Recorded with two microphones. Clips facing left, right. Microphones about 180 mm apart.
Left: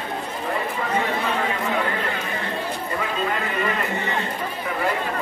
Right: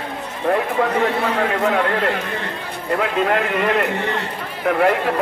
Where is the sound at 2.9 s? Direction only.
70° right (ahead or behind).